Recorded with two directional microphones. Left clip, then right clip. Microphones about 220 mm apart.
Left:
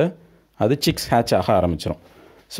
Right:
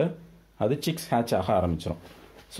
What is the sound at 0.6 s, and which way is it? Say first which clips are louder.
Speech: left 7 dB; 45° left (ahead or behind).